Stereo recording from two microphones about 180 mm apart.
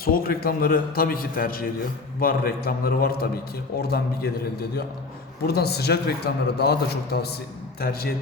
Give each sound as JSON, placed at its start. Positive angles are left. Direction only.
{"t": 0.0, "sound": "a man's voice", "side_deg": 55}
{"t": 5.5, "sound": "a man's voice", "side_deg": 65}